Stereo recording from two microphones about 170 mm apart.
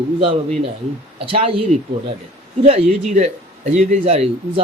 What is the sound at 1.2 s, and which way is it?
Speech, 35° right (ahead or behind).